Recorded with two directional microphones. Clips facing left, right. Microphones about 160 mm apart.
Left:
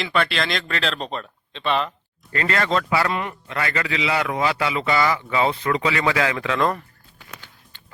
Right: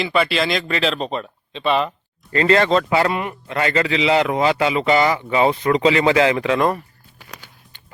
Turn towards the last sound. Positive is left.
turn(degrees=-15)  # may be behind; listen again after turning